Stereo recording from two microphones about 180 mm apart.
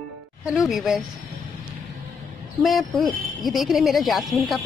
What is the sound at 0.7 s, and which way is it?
Speech, centre (ahead or behind).